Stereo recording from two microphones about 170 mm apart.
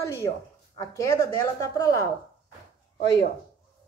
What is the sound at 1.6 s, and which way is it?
Speech, 20° left (ahead or behind).